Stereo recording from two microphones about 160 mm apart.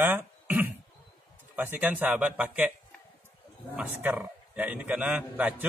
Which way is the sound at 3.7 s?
10° right (ahead or behind).